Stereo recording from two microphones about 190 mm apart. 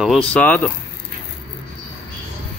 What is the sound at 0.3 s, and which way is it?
Speech, 5° left (ahead or behind).